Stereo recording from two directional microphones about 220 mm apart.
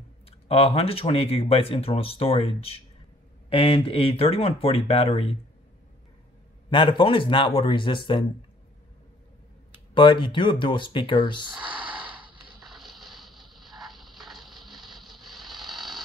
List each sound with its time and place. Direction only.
0.5 s speech: 25° left (ahead or behind)
6.7 s speech: 25° left (ahead or behind)
9.9 s speech: 20° left (ahead or behind)
11.5 s a sound: 5° right (ahead or behind)